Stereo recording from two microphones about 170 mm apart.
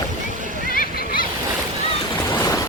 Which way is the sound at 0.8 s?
60° left (ahead or behind).